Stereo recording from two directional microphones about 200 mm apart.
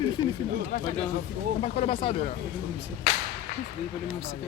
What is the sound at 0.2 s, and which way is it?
Speech, 20° left (ahead or behind).